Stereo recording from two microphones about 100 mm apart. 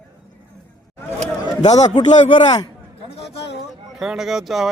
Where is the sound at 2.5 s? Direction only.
45° left (ahead or behind).